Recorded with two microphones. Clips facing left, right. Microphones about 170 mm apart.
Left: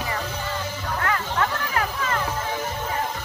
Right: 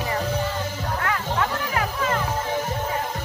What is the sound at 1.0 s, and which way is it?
Music, 5° right (ahead or behind).